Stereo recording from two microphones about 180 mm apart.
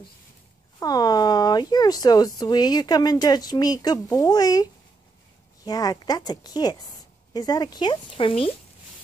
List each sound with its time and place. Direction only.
0.7 s speech: 20° left (ahead or behind)
5.7 s speech: 20° left (ahead or behind)